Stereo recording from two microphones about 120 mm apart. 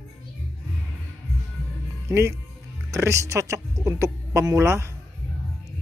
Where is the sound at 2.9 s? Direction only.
25° right (ahead or behind).